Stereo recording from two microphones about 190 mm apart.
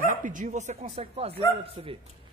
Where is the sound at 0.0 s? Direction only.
45° right (ahead or behind).